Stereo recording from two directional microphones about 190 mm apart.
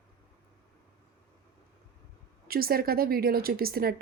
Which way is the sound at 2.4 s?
50° right (ahead or behind).